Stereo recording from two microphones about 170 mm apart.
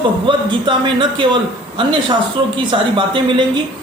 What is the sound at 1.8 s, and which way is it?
Speech, 30° right (ahead or behind).